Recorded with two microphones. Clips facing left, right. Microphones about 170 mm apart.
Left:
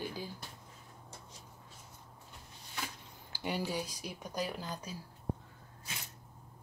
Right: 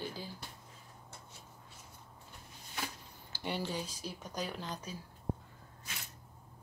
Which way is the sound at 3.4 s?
10° left (ahead or behind).